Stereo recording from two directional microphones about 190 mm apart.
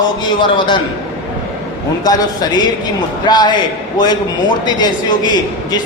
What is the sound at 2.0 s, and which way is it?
A man's voice, 20° left (ahead or behind).